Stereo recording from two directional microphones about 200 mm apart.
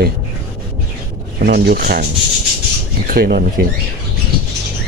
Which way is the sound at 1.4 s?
55° right (ahead or behind).